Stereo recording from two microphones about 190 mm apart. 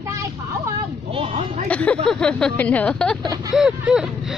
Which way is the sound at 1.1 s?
30° right (ahead or behind).